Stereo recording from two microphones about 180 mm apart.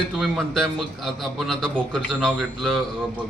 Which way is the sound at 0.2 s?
Centre (ahead or behind).